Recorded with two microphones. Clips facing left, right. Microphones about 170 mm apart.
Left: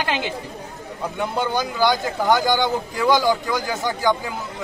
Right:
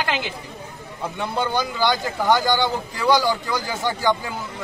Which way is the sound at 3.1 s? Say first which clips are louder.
Left 1 dB; 20° left (ahead or behind).